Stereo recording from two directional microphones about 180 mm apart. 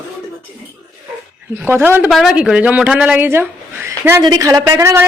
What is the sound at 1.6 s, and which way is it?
A woman's voice, 10° right (ahead or behind).